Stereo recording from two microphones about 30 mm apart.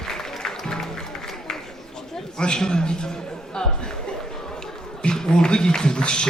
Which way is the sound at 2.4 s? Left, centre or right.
Left.